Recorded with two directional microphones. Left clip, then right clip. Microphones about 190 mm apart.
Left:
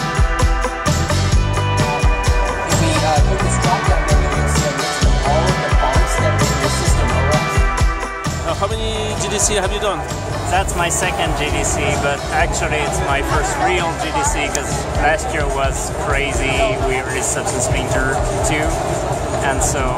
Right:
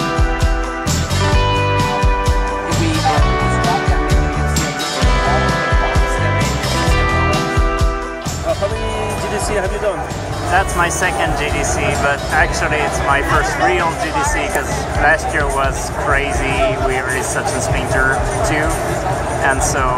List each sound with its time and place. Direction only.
10.5 s speech: 15° left (ahead or behind)
15.0 s speech: 15° left (ahead or behind)